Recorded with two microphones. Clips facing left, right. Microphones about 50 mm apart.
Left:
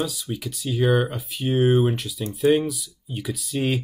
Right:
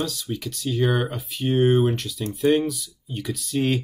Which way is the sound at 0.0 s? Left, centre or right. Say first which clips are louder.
Even; centre.